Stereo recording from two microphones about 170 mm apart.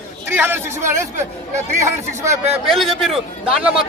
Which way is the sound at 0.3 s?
15° right (ahead or behind).